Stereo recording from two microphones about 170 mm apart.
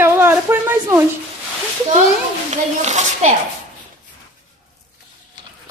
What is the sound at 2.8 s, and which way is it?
Speech, 40° right (ahead or behind).